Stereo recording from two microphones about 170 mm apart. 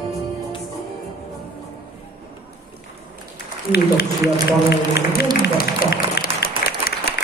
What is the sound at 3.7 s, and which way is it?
Speech, 70° left (ahead or behind).